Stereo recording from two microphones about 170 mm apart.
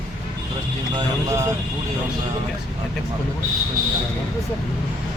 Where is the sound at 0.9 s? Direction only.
20° right (ahead or behind).